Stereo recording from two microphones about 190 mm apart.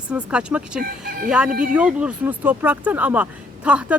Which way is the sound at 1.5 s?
50° right (ahead or behind).